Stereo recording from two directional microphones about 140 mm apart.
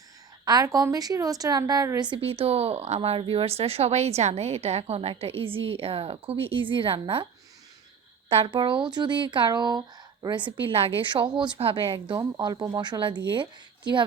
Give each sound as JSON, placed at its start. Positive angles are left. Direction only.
{"t": 0.4, "sound": "a woman's voice", "side_deg": -25}
{"t": 8.3, "sound": "a woman's voice", "side_deg": -40}